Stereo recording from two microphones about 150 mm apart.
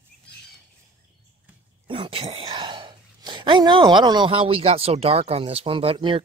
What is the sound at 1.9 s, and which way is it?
Speech, 35° right (ahead or behind).